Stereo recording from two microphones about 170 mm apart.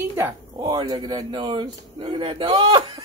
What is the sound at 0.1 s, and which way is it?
Speech, 20° right (ahead or behind).